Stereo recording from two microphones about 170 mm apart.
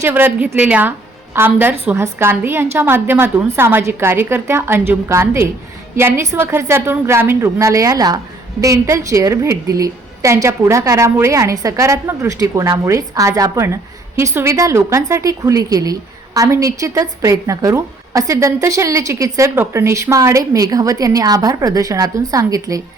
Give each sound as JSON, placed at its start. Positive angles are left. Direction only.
{"t": 0.0, "sound": "a woman's voice", "side_deg": -10}